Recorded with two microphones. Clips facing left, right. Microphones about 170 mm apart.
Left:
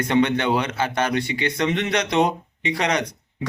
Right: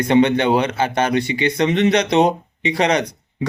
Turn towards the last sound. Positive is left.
turn(degrees=-25)  # may be behind; listen again after turning